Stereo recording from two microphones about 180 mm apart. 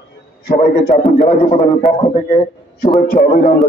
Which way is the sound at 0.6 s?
55° left (ahead or behind).